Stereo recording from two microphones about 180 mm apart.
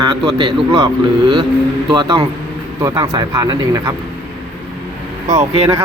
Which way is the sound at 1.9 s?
30° right (ahead or behind).